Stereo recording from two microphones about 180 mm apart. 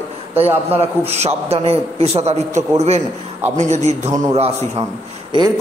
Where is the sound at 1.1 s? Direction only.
35° right (ahead or behind).